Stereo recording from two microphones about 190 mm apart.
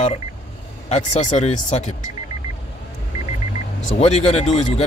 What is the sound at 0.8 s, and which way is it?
Speech, 35° left (ahead or behind).